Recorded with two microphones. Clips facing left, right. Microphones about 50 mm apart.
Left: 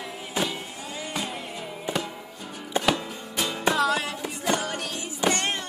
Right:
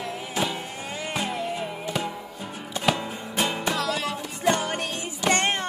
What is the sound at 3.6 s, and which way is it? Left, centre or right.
Music, centre.